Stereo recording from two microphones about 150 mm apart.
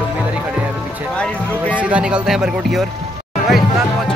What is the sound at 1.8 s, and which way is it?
Speech, 10° right (ahead or behind).